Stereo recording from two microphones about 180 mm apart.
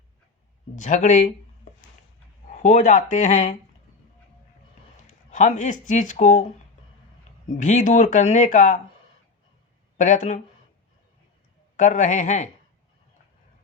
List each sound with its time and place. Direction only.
0.8 s speech: 40° left (ahead or behind)
2.5 s speech: 40° left (ahead or behind)
5.3 s speech: 45° left (ahead or behind)
7.5 s speech: 45° left (ahead or behind)
10.0 s speech: 40° left (ahead or behind)
11.8 s speech: 45° left (ahead or behind)